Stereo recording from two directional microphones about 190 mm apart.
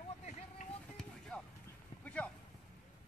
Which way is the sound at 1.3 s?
5° left (ahead or behind).